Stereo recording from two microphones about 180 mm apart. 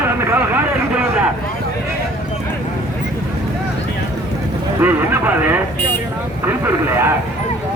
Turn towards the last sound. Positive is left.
turn(degrees=-15)  # may be behind; listen again after turning